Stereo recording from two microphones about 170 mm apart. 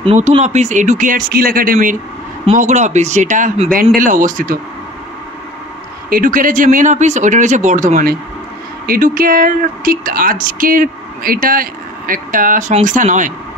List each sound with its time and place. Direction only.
0.0 s speech: 35° right (ahead or behind); by 4.6 s 50° right (ahead or behind)
6.0 s speech: 55° right (ahead or behind)